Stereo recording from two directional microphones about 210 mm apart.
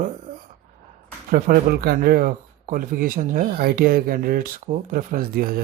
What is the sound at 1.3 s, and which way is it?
Speech, 45° right (ahead or behind).